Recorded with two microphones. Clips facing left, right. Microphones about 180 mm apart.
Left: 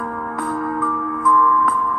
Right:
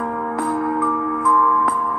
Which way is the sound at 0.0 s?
25° right (ahead or behind).